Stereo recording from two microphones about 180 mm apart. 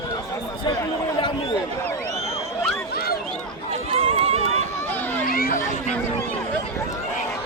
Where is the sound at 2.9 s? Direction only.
60° left (ahead or behind).